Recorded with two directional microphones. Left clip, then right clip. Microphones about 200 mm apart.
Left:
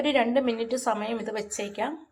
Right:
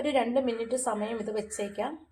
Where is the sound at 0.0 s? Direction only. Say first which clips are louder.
Left 3 dB; 20° left (ahead or behind).